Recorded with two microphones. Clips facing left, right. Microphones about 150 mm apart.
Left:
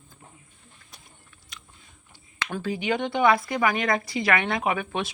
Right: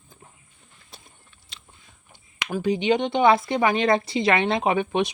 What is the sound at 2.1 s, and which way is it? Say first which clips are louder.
Speech: right 3 dB; 15° right (ahead or behind).